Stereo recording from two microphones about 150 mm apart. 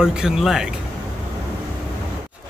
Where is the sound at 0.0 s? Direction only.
5° right (ahead or behind).